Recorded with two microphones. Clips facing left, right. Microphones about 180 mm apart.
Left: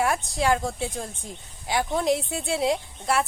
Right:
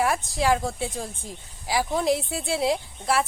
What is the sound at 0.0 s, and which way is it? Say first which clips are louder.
Speech: even; centre (ahead or behind).